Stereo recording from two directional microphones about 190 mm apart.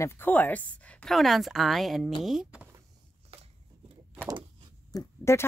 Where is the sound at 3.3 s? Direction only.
30° right (ahead or behind).